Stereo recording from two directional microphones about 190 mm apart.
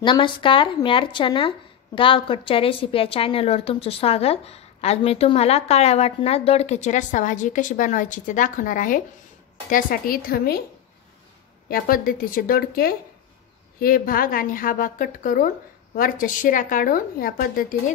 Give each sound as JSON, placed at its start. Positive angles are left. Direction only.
{"t": 0.0, "sound": "a woman's voice", "side_deg": 25}
{"t": 11.7, "sound": "a woman's voice", "side_deg": 50}